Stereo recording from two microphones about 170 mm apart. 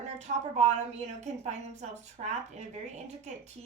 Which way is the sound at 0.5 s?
40° right (ahead or behind).